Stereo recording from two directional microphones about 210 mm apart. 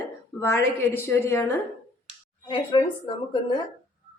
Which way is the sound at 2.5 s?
25° left (ahead or behind).